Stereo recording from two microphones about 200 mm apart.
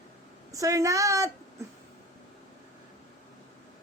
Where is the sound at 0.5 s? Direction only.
15° right (ahead or behind).